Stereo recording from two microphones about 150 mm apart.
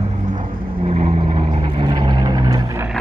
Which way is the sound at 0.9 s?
40° right (ahead or behind).